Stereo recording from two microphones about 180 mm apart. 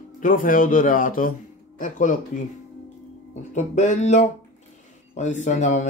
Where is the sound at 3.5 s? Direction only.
40° left (ahead or behind).